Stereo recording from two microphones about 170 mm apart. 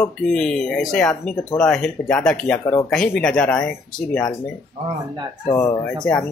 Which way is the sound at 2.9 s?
5° left (ahead or behind).